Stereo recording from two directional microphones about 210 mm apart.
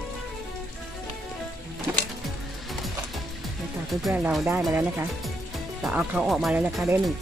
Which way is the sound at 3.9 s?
5° right (ahead or behind).